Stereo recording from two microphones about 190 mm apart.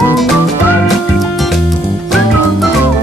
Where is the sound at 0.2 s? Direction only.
Centre (ahead or behind).